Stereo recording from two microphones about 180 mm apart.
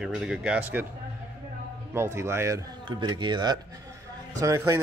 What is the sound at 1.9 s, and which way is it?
Speech, 15° right (ahead or behind).